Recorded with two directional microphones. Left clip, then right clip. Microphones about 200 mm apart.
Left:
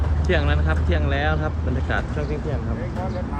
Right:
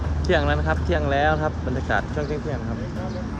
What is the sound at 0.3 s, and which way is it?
Speech, 10° right (ahead or behind).